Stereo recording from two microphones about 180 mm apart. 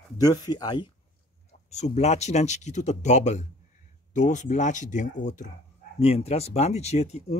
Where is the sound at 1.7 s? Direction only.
40° left (ahead or behind).